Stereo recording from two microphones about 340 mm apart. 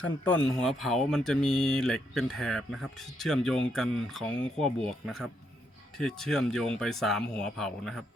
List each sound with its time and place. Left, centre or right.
0.3 s speech: centre